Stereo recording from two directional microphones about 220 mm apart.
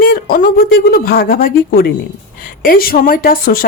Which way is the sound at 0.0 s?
40° left (ahead or behind).